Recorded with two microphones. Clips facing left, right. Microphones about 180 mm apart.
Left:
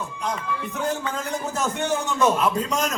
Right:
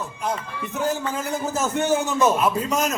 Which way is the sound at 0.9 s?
5° right (ahead or behind).